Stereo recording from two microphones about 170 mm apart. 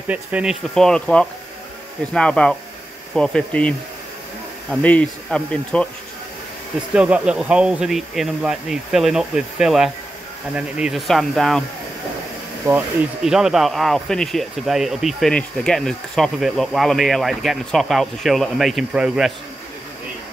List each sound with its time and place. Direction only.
0.1 s speech: 5° right (ahead or behind)
6.9 s speech: 5° right (ahead or behind)
12.7 s speech: 20° right (ahead or behind)
13.2 s speech: 5° right (ahead or behind)